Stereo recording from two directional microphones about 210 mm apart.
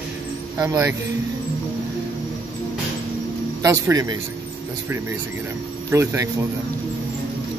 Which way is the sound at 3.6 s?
15° right (ahead or behind).